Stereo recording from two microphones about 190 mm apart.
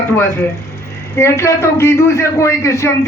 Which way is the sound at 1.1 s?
15° left (ahead or behind).